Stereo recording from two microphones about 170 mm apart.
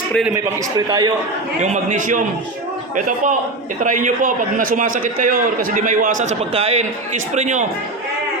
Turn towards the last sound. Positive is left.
turn(degrees=-45)  # may be behind; listen again after turning